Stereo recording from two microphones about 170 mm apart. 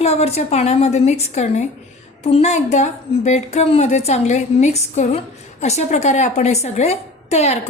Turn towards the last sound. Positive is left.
turn(degrees=40)  # may be behind; listen again after turning